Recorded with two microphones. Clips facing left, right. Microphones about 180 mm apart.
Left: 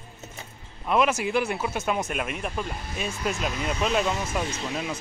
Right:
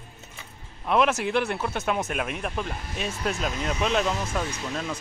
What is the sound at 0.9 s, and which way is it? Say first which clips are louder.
Speech: even; centre (ahead or behind).